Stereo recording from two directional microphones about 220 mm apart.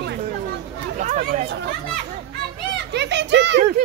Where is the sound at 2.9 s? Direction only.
50° right (ahead or behind).